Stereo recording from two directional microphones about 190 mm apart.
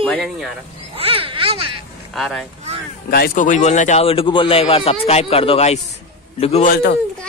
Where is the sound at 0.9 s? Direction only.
30° right (ahead or behind).